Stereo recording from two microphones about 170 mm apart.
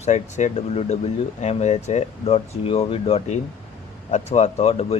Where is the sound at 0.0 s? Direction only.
45° left (ahead or behind).